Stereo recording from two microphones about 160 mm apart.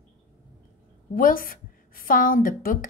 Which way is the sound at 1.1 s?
60° left (ahead or behind).